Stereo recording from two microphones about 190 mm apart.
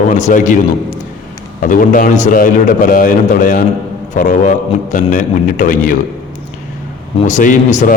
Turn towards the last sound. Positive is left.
turn(degrees=40)  # may be behind; listen again after turning